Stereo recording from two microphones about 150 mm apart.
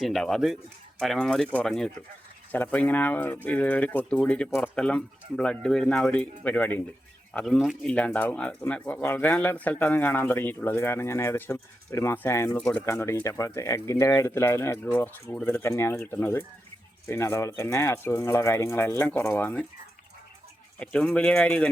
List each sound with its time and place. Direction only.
0.0 s speech: centre (ahead or behind)
20.7 s speech: 10° left (ahead or behind)